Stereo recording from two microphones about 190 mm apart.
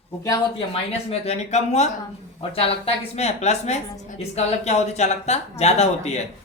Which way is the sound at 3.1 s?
35° left (ahead or behind).